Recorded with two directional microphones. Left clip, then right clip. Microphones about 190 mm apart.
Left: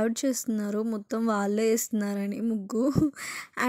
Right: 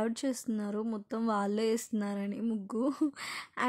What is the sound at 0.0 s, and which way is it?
A woman's voice, 15° left (ahead or behind).